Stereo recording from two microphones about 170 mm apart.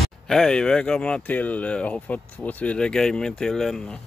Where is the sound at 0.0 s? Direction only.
5° left (ahead or behind).